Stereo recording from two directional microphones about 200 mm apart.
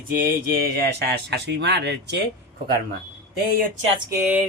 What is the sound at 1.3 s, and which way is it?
Speech, 55° right (ahead or behind).